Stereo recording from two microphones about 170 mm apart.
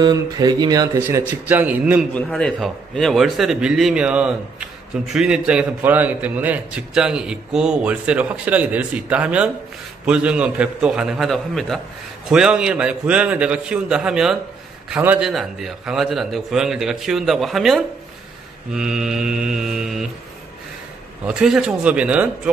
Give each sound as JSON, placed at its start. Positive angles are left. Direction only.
{"t": 0.0, "sound": "a man's voice", "side_deg": -25}
{"t": 2.1, "sound": "a man's voice", "side_deg": 5}
{"t": 21.3, "sound": "a man's voice", "side_deg": -5}